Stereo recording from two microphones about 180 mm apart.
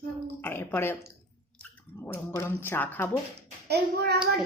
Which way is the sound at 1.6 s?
10° left (ahead or behind).